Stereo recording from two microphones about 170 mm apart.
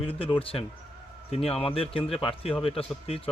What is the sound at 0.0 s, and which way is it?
Speech, 30° left (ahead or behind).